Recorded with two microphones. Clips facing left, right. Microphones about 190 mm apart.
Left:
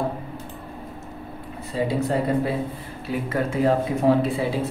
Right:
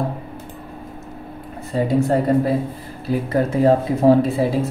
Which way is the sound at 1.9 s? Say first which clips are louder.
Right 6 dB; 45° right (ahead or behind).